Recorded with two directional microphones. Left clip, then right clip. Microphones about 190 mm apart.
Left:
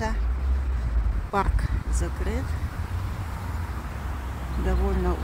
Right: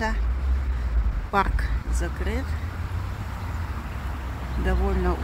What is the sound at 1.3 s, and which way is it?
Speech, 10° left (ahead or behind).